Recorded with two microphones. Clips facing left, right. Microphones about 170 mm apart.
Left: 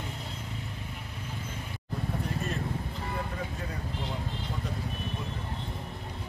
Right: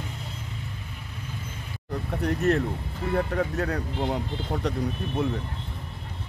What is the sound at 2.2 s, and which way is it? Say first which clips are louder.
Speech: right 10 dB; 75° right (ahead or behind).